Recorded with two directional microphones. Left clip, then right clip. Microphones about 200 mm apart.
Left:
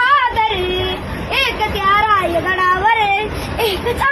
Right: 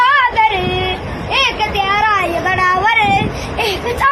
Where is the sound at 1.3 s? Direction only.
15° right (ahead or behind).